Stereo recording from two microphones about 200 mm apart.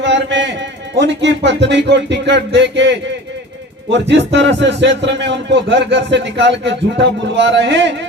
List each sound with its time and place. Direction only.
0.0 s a man's voice: 65° right (ahead or behind)